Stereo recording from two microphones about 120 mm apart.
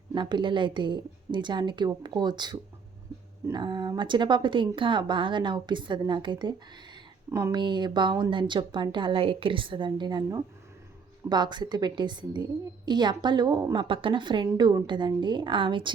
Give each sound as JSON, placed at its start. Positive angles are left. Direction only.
{"t": 0.1, "sound": "a woman's voice", "side_deg": -40}
{"t": 7.3, "sound": "speech", "side_deg": -25}
{"t": 7.5, "sound": "a woman's voice", "side_deg": -40}